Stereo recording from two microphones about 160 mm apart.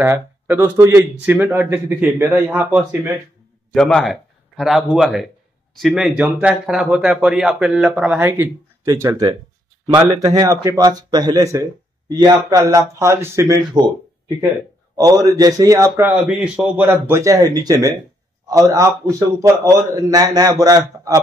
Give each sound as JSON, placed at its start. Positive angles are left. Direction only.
{"t": 0.0, "sound": "a man's voice", "side_deg": -15}
{"t": 3.7, "sound": "a man's voice", "side_deg": 5}
{"t": 15.0, "sound": "a man's voice", "side_deg": -25}
{"t": 16.1, "sound": "a man's voice", "side_deg": -5}